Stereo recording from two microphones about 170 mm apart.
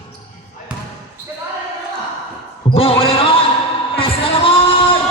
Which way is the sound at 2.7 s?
35° left (ahead or behind).